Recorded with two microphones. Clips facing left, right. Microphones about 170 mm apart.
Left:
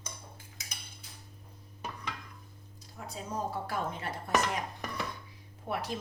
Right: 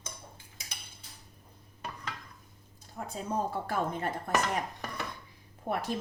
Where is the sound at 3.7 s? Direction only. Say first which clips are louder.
Right 4 dB; 50° right (ahead or behind).